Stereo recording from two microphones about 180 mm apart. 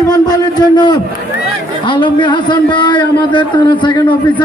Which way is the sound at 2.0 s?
25° left (ahead or behind).